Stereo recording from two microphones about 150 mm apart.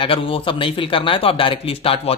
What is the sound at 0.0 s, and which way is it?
A man's voice, 35° left (ahead or behind).